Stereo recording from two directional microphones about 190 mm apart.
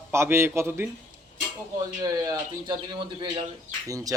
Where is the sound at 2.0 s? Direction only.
20° right (ahead or behind).